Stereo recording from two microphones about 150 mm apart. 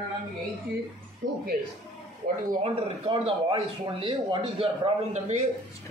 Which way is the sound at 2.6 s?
35° right (ahead or behind).